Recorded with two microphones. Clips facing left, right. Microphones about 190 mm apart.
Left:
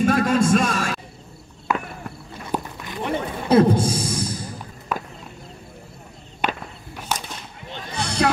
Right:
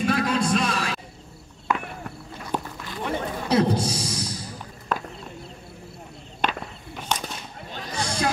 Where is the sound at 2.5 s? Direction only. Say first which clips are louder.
Left 2 dB; 15° left (ahead or behind).